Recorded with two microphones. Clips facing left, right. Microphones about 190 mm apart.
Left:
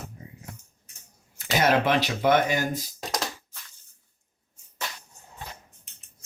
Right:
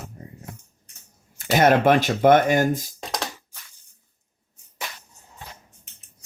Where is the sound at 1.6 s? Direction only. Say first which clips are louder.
Right 5 dB; 50° right (ahead or behind).